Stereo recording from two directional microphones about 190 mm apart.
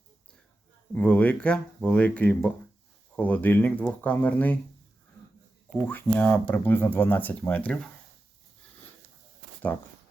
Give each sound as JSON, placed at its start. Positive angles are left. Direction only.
{"t": 0.9, "sound": "speech", "side_deg": 5}
{"t": 5.7, "sound": "speech", "side_deg": 10}
{"t": 9.7, "sound": "speech", "side_deg": 10}